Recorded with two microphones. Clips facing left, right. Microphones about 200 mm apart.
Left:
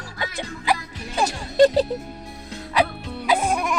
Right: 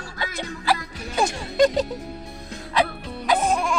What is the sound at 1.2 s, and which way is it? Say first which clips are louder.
Speech: left 3 dB; 30° left (ahead or behind).